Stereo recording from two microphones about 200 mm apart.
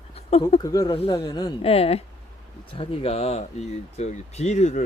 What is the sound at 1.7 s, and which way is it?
Speech, 30° left (ahead or behind).